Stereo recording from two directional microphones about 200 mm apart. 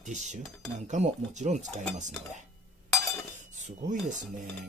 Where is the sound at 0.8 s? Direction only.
35° right (ahead or behind).